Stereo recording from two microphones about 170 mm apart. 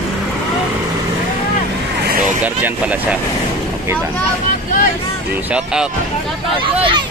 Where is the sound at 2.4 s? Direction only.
10° right (ahead or behind).